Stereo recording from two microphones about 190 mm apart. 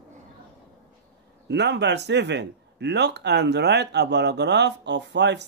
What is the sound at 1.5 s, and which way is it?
Speech, 65° right (ahead or behind).